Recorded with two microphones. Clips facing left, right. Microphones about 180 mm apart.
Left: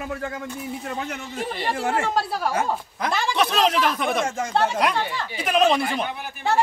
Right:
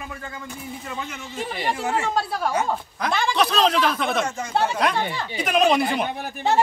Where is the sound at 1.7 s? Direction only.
55° left (ahead or behind).